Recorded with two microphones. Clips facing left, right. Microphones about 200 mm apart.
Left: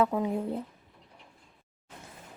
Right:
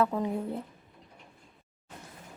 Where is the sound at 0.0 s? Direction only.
15° left (ahead or behind).